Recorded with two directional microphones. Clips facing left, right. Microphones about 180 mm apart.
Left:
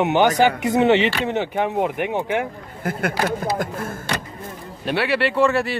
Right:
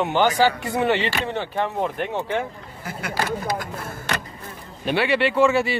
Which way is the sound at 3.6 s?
50° left (ahead or behind).